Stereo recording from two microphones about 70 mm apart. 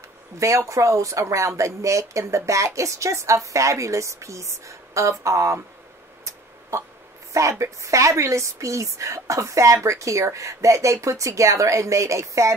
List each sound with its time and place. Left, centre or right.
0.4 s speech: right
7.3 s speech: right